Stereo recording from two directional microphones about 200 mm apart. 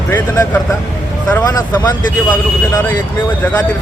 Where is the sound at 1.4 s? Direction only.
20° left (ahead or behind).